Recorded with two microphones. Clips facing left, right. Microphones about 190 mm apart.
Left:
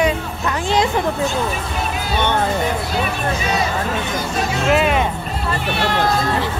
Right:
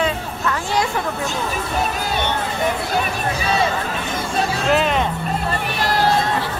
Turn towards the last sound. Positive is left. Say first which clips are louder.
# left 2 dB
turn(degrees=5)  # may be behind; listen again after turning